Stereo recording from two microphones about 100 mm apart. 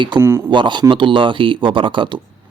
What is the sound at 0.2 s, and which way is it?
Speech, 25° right (ahead or behind).